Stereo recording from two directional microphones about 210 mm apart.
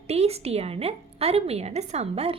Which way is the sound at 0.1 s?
30° right (ahead or behind).